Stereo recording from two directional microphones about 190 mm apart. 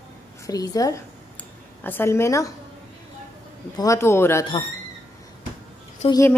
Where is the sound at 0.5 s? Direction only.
20° left (ahead or behind).